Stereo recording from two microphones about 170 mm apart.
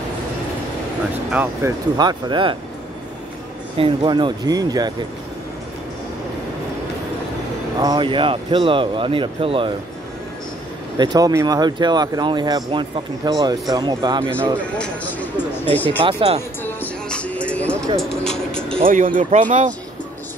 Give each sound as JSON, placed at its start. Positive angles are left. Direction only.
{"t": 1.3, "sound": "speech", "side_deg": -10}
{"t": 2.0, "sound": "speech", "side_deg": -25}
{"t": 3.7, "sound": "speech", "side_deg": -30}
{"t": 7.8, "sound": "speech", "side_deg": -25}
{"t": 11.0, "sound": "speech", "side_deg": -20}
{"t": 14.6, "sound": "speech", "side_deg": 5}
{"t": 16.1, "sound": "speech", "side_deg": -35}
{"t": 16.6, "sound": "music", "side_deg": 10}
{"t": 18.9, "sound": "speech", "side_deg": -50}